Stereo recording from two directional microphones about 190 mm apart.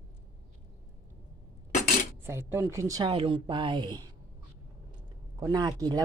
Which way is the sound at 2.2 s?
15° right (ahead or behind).